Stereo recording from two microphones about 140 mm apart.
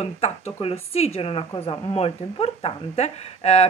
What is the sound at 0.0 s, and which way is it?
A woman's voice, 45° left (ahead or behind).